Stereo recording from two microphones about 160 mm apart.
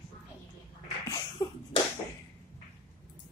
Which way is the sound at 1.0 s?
30° left (ahead or behind).